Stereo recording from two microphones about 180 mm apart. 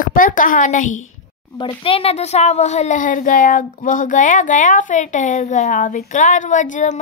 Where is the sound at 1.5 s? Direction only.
30° left (ahead or behind).